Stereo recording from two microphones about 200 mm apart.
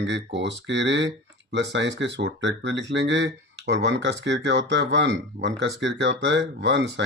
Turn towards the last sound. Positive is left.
turn(degrees=-60)  # may be behind; listen again after turning